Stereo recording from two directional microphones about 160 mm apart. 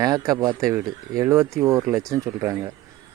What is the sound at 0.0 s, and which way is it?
Speech, 20° right (ahead or behind).